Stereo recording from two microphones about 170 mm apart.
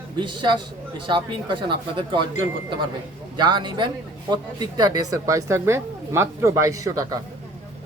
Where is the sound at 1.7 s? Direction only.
30° right (ahead or behind).